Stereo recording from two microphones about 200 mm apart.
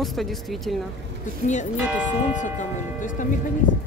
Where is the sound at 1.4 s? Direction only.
35° left (ahead or behind).